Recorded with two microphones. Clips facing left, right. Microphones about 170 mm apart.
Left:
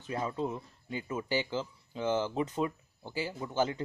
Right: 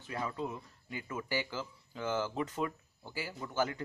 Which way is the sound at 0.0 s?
25° left (ahead or behind).